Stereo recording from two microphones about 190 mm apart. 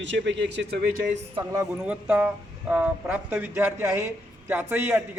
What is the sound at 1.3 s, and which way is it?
Speech, 20° right (ahead or behind).